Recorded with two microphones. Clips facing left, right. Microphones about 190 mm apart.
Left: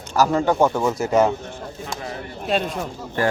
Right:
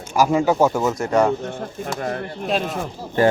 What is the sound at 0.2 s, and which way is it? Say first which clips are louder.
A man's voice: right 1 dB; 10° right (ahead or behind).